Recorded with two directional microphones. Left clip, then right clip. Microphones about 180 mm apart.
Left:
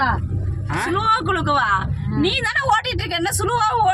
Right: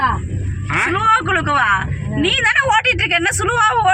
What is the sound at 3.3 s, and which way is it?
Speech, 10° right (ahead or behind).